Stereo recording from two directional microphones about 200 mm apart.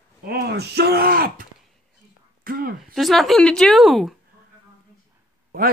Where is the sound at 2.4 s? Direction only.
45° right (ahead or behind).